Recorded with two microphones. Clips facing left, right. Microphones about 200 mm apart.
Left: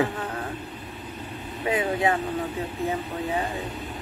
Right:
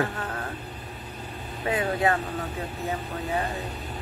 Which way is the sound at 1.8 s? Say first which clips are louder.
Even; 15° left (ahead or behind).